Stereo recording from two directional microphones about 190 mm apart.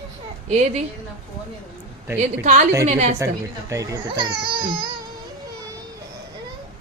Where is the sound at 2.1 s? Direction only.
40° right (ahead or behind).